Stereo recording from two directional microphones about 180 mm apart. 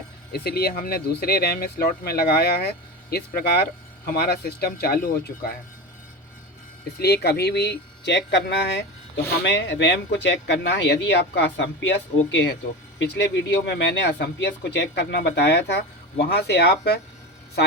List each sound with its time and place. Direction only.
0.3 s speech: 60° left (ahead or behind)
7.0 s speech: 65° left (ahead or behind)
13.0 s speech: 70° left (ahead or behind)